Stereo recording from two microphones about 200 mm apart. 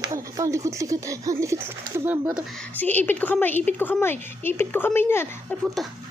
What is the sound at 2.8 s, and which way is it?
A woman's voice, 10° left (ahead or behind).